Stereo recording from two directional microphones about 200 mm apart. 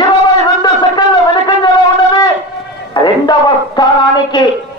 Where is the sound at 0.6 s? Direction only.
20° left (ahead or behind).